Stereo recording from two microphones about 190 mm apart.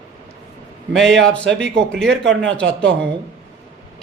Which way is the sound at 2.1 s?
70° right (ahead or behind).